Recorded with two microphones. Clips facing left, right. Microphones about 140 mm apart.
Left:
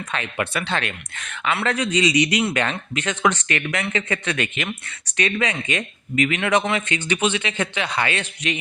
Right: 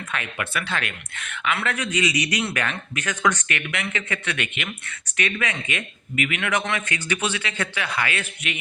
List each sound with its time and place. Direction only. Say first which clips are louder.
0.1 s a man's voice: left 4 dB; 30° left (ahead or behind)